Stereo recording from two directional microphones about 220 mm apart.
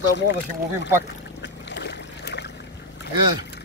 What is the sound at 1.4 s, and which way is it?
Boat, 50° left (ahead or behind).